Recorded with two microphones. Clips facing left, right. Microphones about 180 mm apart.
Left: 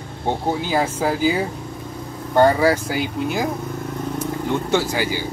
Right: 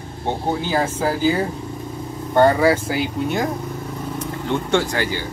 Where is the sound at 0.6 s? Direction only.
10° left (ahead or behind).